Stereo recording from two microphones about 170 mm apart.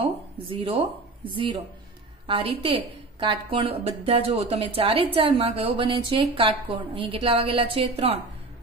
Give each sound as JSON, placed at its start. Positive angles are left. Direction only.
{"t": 0.0, "sound": "a woman's voice", "side_deg": -30}